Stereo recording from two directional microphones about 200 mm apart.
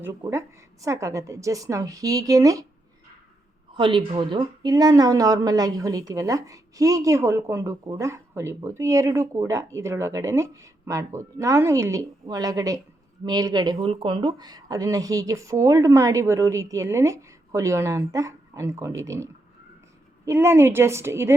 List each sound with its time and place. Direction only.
0.0 s speech: 15° right (ahead or behind)
3.8 s speech: 25° right (ahead or behind)